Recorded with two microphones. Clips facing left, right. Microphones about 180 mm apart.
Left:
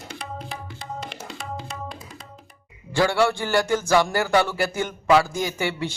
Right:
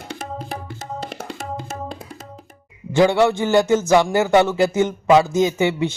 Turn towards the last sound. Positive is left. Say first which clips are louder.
# right 7 dB
turn(degrees=-20)  # may be behind; listen again after turning